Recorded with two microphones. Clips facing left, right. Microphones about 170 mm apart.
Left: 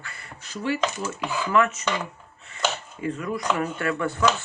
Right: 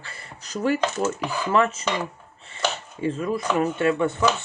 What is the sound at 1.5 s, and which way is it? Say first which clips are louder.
Dishes: right 1 dB; 30° right (ahead or behind).